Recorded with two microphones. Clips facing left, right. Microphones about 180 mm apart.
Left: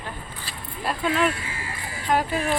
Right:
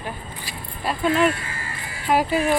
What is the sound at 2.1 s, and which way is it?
Speech, 10° right (ahead or behind).